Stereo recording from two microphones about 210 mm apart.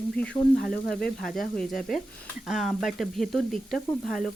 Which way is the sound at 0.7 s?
45° left (ahead or behind).